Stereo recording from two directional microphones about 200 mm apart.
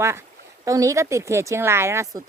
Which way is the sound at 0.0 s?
15° right (ahead or behind).